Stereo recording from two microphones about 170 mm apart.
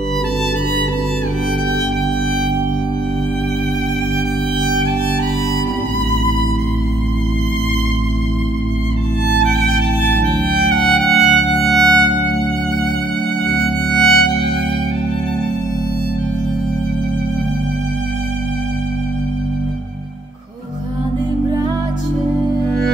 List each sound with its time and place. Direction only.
10.7 s music: 5° left (ahead or behind)
13.5 s violin: 5° left (ahead or behind)